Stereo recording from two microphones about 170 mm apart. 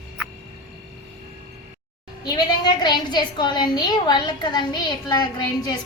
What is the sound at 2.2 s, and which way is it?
A woman's voice, 25° left (ahead or behind).